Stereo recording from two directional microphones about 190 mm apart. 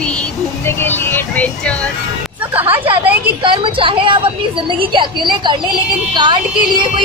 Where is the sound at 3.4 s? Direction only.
25° right (ahead or behind).